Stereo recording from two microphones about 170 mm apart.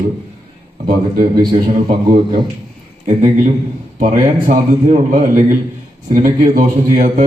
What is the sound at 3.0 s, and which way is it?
Speech, 45° right (ahead or behind).